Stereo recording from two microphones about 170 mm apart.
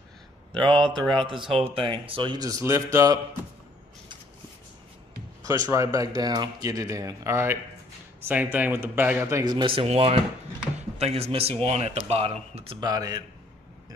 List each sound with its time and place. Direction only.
0.6 s speech: 30° right (ahead or behind)
5.4 s speech: 20° right (ahead or behind)
12.9 s speech: 20° right (ahead or behind)